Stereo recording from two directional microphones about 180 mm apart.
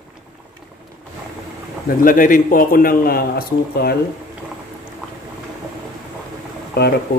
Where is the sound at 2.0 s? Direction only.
50° left (ahead or behind).